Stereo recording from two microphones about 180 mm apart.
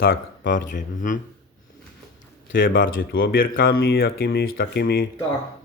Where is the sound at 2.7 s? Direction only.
55° left (ahead or behind).